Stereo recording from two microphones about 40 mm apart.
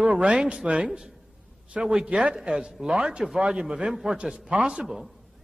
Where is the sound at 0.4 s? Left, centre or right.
Centre.